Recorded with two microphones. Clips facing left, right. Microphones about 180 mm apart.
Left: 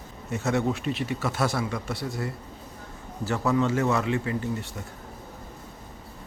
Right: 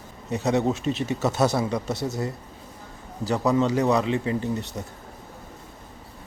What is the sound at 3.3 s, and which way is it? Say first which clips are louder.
Speech: right 3 dB; 15° right (ahead or behind).